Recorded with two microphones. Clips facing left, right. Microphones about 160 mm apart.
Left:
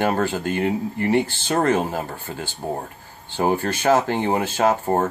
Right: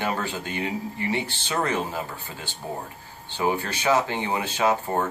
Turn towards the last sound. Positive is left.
turn(degrees=45)  # may be behind; listen again after turning